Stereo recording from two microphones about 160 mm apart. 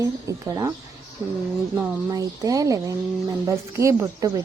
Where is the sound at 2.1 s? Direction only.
20° right (ahead or behind).